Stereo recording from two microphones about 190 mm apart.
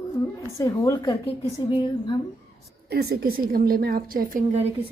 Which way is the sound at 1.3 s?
30° left (ahead or behind).